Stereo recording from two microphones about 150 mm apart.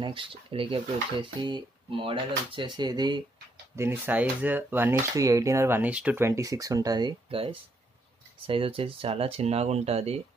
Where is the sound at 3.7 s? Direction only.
15° right (ahead or behind); by 10.2 s 45° right (ahead or behind).